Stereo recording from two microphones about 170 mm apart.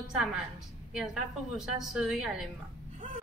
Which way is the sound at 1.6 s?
Centre (ahead or behind).